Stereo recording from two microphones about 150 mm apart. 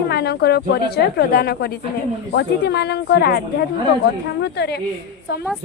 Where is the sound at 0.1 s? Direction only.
90° left.